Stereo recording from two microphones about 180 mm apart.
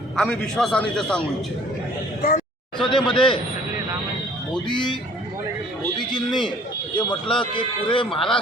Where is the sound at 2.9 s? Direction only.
30° left (ahead or behind).